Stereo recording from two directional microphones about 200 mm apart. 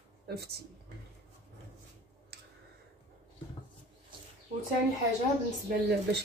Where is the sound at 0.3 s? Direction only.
50° right (ahead or behind).